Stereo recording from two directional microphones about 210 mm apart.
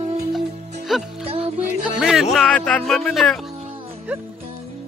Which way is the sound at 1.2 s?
25° right (ahead or behind).